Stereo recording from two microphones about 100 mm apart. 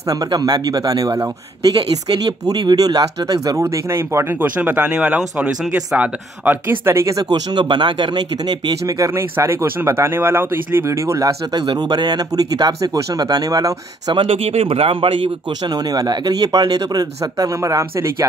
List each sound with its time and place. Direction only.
0.1 s speech: 40° right (ahead or behind)
3.6 s speech: 30° right (ahead or behind)
11.6 s speech: 45° right (ahead or behind)
14.1 s speech: 70° right (ahead or behind)
15.7 s speech: 40° right (ahead or behind)